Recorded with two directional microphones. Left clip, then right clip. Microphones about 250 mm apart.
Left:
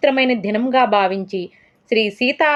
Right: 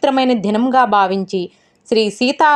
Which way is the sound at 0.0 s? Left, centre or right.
Centre.